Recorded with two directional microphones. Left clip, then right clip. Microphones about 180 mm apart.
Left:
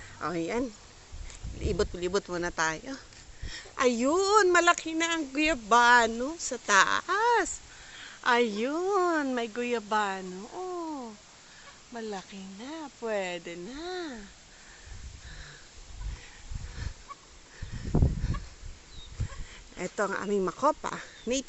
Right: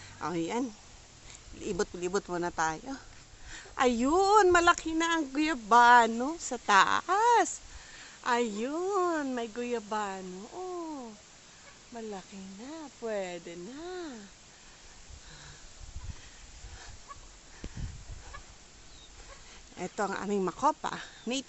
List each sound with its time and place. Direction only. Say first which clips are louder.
0.2 s a woman's voice: left 2 dB; 10° right (ahead or behind)
7.9 s a woman's voice: left 4 dB; 10° left (ahead or behind); by 11.1 s 25° left (ahead or behind)
11.9 s speech: left 4 dB; 15° left (ahead or behind)
19.7 s speech: left 3 dB; 5° right (ahead or behind)